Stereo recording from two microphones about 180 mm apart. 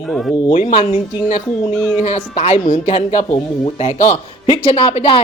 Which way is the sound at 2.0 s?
40° left (ahead or behind).